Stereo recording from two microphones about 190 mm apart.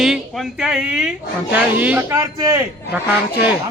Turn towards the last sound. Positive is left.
turn(degrees=-10)  # may be behind; listen again after turning